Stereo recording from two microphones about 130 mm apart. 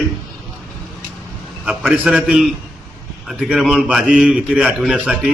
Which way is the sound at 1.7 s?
5° right (ahead or behind).